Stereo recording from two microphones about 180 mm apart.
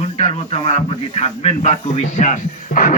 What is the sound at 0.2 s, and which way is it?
Speech, 35° left (ahead or behind).